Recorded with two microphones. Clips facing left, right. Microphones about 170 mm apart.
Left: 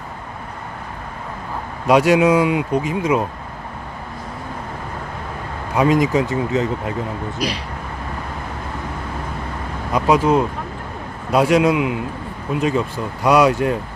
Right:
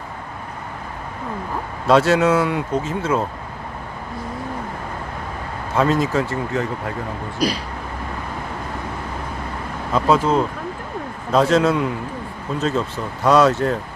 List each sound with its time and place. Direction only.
1.9 s speech: 15° left (ahead or behind)
5.7 s speech: 15° left (ahead or behind)
7.3 s speech: 40° right (ahead or behind)
9.9 s speech: 15° left (ahead or behind)